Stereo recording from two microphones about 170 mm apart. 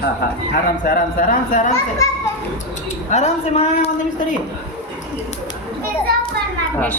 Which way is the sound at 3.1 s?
40° left (ahead or behind).